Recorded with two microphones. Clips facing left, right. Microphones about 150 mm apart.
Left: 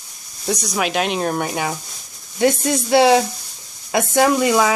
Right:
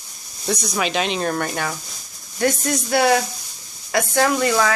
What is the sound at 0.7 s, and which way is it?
Speech, 10° left (ahead or behind).